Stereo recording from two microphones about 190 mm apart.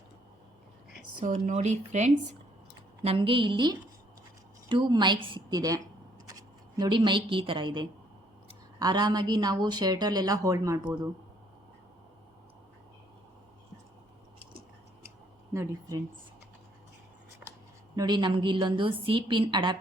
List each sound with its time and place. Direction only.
1.3 s a woman's voice: 35° right (ahead or behind); by 11.1 s 15° right (ahead or behind)
15.5 s a woman's voice: 15° right (ahead or behind)
17.9 s a woman's voice: 25° right (ahead or behind)